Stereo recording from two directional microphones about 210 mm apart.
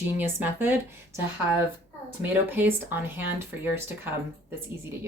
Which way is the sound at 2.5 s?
10° right (ahead or behind).